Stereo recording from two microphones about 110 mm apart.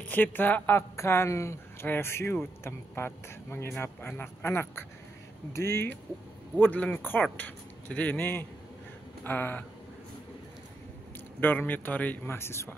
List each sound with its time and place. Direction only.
0.1 s speech: 15° left (ahead or behind)
11.4 s speech: 15° left (ahead or behind)